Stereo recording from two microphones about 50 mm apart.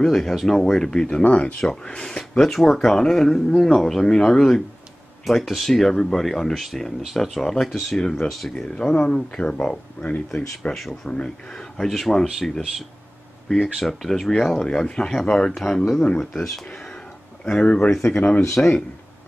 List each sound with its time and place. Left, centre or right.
0.0 s speech: centre
1.2 s speech: left
1.6 s speech: centre
2.4 s speech: centre
5.2 s speech: centre
8.5 s speech: centre
10.7 s speech: centre
17.5 s speech: centre
18.1 s speech: left